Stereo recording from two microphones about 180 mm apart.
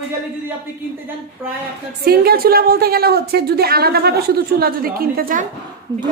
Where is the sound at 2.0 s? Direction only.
60° right (ahead or behind).